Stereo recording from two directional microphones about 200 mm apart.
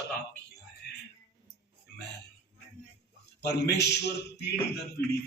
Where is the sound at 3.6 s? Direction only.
55° left (ahead or behind).